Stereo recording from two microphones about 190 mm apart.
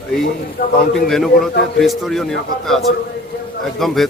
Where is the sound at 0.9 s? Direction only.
Centre (ahead or behind).